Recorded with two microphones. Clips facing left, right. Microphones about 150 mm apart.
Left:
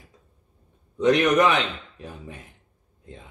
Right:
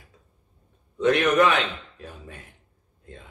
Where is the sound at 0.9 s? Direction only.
15° left (ahead or behind).